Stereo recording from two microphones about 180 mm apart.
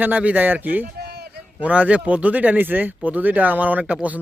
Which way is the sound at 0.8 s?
60° right (ahead or behind).